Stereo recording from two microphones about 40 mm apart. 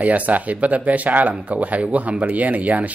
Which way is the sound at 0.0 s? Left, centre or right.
Right.